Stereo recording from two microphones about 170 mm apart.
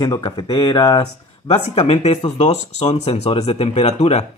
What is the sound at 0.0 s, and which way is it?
Speech, 25° left (ahead or behind).